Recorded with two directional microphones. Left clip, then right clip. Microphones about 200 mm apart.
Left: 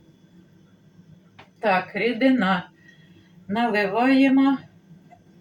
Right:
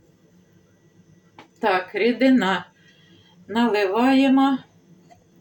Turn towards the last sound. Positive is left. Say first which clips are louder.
# right 1 dB
turn(degrees=-55)  # may be behind; listen again after turning